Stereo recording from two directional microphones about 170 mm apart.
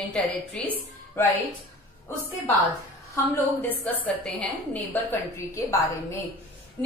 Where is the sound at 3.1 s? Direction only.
10° left (ahead or behind).